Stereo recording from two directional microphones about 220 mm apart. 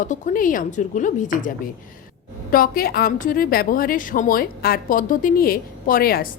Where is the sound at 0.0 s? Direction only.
35° left (ahead or behind).